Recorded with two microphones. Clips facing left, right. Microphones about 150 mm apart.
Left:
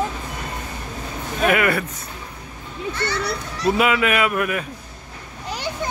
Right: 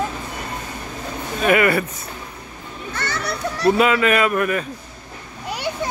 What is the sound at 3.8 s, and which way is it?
Speech, 5° left (ahead or behind).